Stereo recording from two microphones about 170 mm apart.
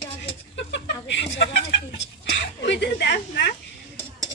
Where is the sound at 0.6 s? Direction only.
90° left.